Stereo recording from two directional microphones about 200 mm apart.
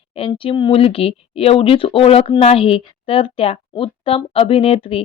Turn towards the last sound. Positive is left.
turn(degrees=30)  # may be behind; listen again after turning